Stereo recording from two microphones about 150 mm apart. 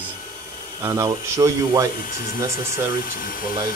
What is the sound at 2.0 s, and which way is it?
Speech, 75° left (ahead or behind).